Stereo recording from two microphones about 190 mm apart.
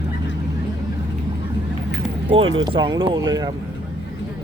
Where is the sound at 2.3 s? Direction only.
30° right (ahead or behind).